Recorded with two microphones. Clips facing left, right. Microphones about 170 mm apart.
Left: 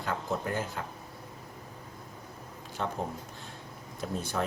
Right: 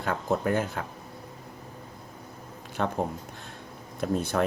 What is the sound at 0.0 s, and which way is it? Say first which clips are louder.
Speech: right 5 dB; 60° right (ahead or behind).